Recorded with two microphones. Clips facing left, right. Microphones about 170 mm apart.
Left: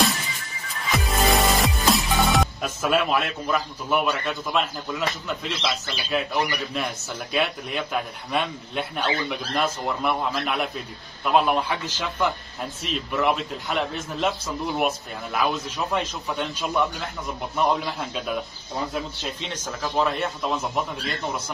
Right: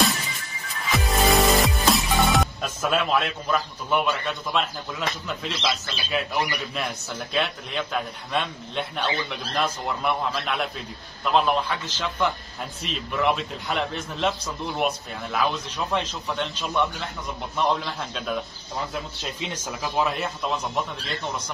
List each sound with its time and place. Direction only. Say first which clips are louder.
0.9 s music: right 1 dB; centre (ahead or behind)
7.3 s a man's voice: left 2 dB; 5° left (ahead or behind)
12.8 s a man's voice: left 1 dB; centre (ahead or behind)